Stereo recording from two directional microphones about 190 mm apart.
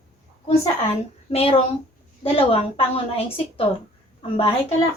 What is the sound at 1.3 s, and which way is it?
A woman's voice, 30° left (ahead or behind).